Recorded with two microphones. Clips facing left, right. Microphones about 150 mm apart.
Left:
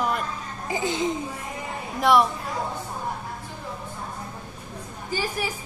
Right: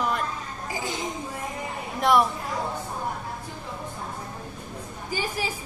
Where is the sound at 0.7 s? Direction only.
20° left (ahead or behind).